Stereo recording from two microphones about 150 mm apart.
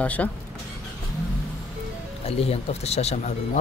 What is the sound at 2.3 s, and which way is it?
Speech, 45° left (ahead or behind).